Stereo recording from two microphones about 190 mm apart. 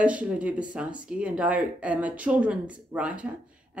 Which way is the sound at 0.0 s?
5° right (ahead or behind).